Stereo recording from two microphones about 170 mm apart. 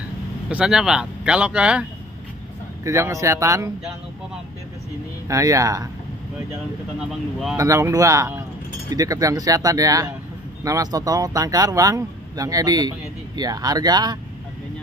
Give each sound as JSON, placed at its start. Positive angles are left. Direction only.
{"t": 0.5, "sound": "speech", "side_deg": -5}
{"t": 2.8, "sound": "speech", "side_deg": -20}
{"t": 5.3, "sound": "speech", "side_deg": -20}
{"t": 7.0, "sound": "speech", "side_deg": 0}
{"t": 7.5, "sound": "speech", "side_deg": -20}